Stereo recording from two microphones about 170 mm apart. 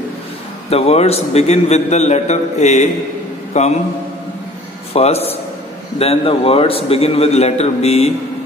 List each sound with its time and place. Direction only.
0.7 s a man's voice: 35° left (ahead or behind)
4.9 s a man's voice: 35° left (ahead or behind)